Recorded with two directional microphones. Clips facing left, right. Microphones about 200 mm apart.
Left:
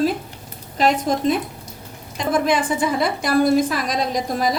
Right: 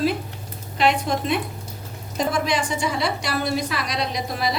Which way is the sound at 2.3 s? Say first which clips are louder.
Left 4 dB; 55° left (ahead or behind).